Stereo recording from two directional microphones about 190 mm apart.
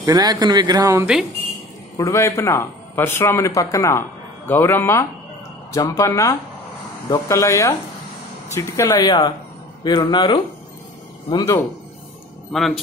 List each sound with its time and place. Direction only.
0.0 s speech: 20° right (ahead or behind)
2.0 s a man's voice: 15° left (ahead or behind)
12.5 s speech: centre (ahead or behind)